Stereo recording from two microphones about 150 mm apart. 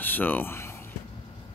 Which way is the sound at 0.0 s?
10° left (ahead or behind).